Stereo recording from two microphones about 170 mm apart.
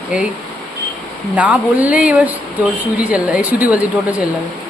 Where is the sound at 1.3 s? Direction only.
10° right (ahead or behind).